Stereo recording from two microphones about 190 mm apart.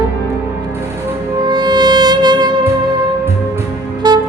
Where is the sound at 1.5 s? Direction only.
20° right (ahead or behind).